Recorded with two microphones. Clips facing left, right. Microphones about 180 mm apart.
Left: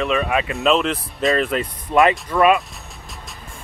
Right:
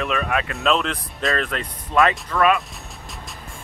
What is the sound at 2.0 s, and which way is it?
Speech, 20° left (ahead or behind).